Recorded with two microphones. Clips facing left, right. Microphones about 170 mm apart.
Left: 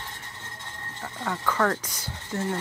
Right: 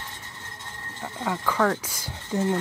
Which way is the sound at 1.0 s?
10° right (ahead or behind).